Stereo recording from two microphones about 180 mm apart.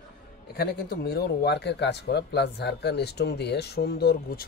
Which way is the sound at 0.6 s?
60° left (ahead or behind).